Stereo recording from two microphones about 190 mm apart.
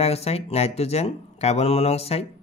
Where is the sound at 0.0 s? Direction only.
35° left (ahead or behind).